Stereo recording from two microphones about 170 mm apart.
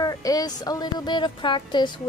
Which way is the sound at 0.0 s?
20° left (ahead or behind).